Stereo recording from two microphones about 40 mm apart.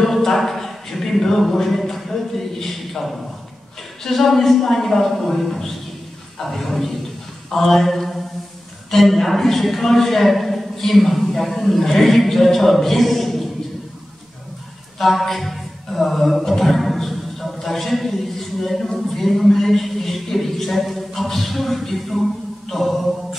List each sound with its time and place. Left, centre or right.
0.0 s a capella: centre
4.0 s a man's voice: centre
15.0 s music: centre